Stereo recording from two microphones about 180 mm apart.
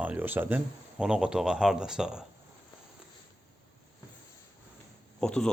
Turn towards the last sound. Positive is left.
turn(degrees=5)  # may be behind; listen again after turning